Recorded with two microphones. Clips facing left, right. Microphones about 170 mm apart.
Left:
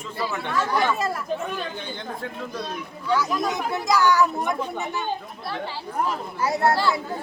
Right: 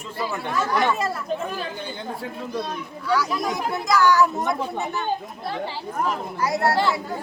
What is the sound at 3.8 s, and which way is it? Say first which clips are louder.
Speech: right 1 dB; 15° left (ahead or behind).